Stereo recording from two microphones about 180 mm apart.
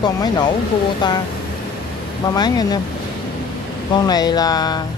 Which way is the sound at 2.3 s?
20° left (ahead or behind).